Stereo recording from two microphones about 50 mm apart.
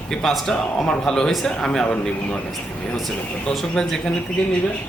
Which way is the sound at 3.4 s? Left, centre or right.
Centre.